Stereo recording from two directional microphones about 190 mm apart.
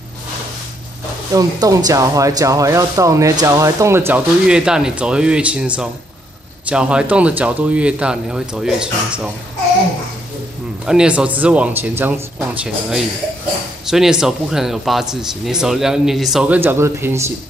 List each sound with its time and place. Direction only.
1.3 s speech: 20° right (ahead or behind)
10.9 s speech: 5° right (ahead or behind)